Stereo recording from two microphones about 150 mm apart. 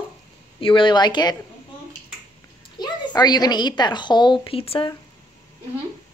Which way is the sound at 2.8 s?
30° left (ahead or behind).